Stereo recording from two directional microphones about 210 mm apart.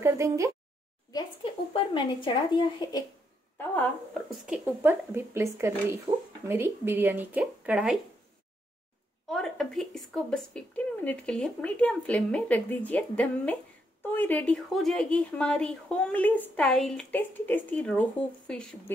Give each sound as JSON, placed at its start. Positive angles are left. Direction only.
{"t": 0.0, "sound": "a sound", "side_deg": -15}
{"t": 1.1, "sound": "speech", "side_deg": 25}
{"t": 4.5, "sound": "speech", "side_deg": -10}
{"t": 9.3, "sound": "speech", "side_deg": 0}